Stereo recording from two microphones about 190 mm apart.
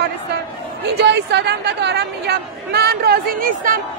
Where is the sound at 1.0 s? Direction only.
65° right (ahead or behind).